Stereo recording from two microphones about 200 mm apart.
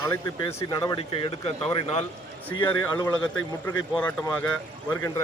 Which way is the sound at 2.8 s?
15° left (ahead or behind).